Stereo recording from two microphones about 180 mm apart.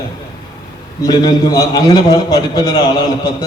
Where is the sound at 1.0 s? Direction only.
20° left (ahead or behind).